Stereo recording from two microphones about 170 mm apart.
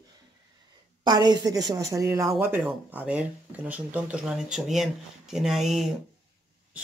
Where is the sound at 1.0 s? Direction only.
25° right (ahead or behind).